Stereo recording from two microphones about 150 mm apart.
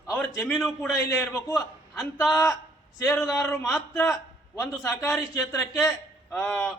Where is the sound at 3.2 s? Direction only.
Centre (ahead or behind).